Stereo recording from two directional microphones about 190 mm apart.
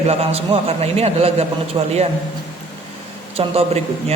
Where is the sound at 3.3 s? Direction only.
30° right (ahead or behind).